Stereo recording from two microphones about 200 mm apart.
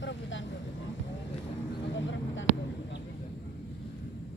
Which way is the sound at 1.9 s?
65° left (ahead or behind).